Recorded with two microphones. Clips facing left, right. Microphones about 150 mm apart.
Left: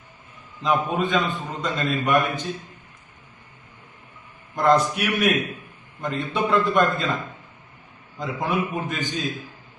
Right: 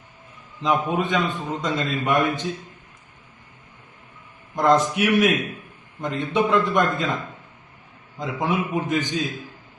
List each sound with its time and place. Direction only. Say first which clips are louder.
0.6 s a man's voice: even; 20° right (ahead or behind)
4.5 s a man's voice: right 1 dB; 20° right (ahead or behind)
8.2 s a man's voice: right 1 dB; 20° right (ahead or behind)